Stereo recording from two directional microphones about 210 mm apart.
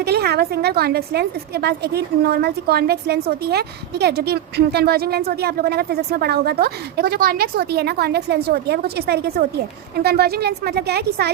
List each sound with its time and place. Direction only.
0.0 s a woman's voice: 50° right (ahead or behind)